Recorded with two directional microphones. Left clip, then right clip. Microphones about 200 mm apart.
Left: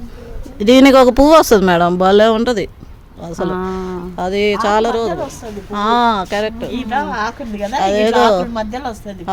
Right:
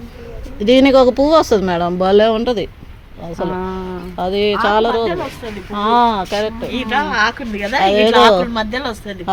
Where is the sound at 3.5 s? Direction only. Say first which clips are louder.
Left 2 dB; 60° left (ahead or behind).